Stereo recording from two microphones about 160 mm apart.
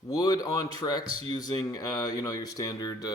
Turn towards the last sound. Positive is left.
turn(degrees=25)  # may be behind; listen again after turning